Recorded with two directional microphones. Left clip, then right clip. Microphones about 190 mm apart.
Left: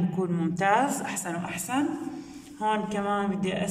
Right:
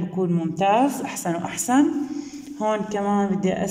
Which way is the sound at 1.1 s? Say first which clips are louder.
Right 5 dB; 30° right (ahead or behind).